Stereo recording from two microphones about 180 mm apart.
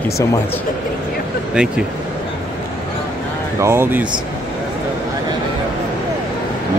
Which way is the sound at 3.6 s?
15° right (ahead or behind).